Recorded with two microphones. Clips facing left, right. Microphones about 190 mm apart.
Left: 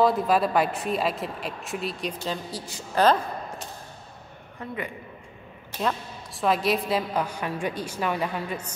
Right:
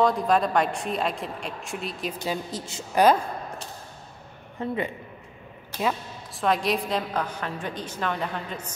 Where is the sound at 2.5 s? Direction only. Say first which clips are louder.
Right 1 dB; 20° right (ahead or behind).